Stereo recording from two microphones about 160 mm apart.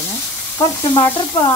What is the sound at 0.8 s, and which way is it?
Stir, 15° left (ahead or behind).